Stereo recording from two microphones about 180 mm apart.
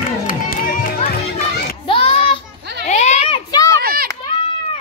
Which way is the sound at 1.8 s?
30° left (ahead or behind).